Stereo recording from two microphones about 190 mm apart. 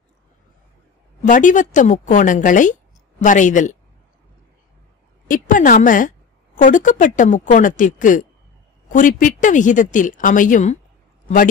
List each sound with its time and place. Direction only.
1.2 s speech: 40° left (ahead or behind)
5.3 s a woman's voice: 45° left (ahead or behind)